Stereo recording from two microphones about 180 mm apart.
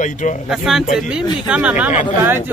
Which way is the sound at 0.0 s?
45° left (ahead or behind).